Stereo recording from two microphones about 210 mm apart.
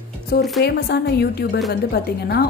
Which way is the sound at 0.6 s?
50° left (ahead or behind).